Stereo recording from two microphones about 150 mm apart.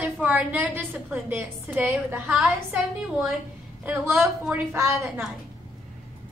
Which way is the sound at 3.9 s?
15° right (ahead or behind).